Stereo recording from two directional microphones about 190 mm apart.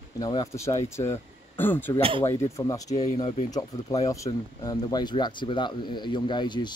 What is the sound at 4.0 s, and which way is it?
Speech, 15° left (ahead or behind).